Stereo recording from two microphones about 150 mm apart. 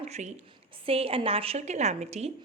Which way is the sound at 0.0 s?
50° right (ahead or behind).